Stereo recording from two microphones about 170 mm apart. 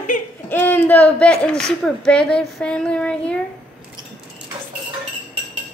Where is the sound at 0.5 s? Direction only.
10° left (ahead or behind).